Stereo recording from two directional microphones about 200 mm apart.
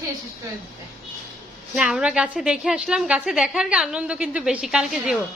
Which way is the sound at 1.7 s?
5° right (ahead or behind).